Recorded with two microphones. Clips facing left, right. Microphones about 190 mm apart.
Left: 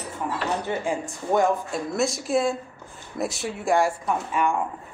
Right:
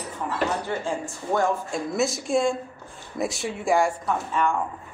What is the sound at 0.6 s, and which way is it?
Speech, 20° left (ahead or behind).